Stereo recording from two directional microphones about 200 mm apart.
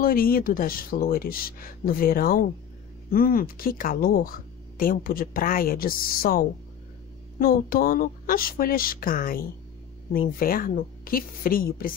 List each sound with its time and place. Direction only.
0.0 s speech: 45° left (ahead or behind)
10.4 s speech: 45° left (ahead or behind)